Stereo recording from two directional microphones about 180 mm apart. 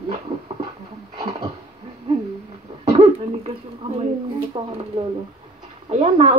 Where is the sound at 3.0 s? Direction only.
35° right (ahead or behind).